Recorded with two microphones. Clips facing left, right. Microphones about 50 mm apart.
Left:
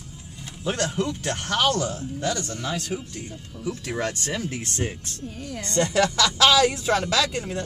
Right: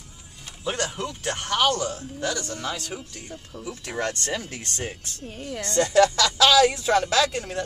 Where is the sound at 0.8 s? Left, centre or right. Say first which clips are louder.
Left 3 dB; centre.